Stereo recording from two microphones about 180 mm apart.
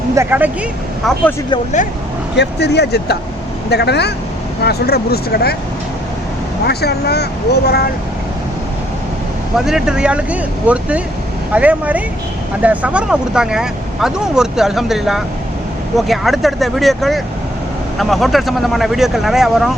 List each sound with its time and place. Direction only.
0.2 s speech: 10° right (ahead or behind)
2.3 s speech: 70° left (ahead or behind)
6.7 s speech: 65° left (ahead or behind)
9.6 s speech: 5° right (ahead or behind)